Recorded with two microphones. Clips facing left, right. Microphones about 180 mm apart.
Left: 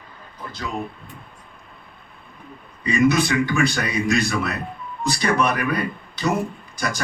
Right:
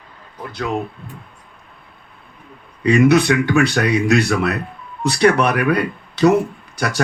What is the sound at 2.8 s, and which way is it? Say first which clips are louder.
Speech: right 6 dB; 65° right (ahead or behind).